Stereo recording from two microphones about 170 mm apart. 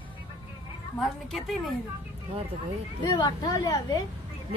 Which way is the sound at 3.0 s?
25° left (ahead or behind).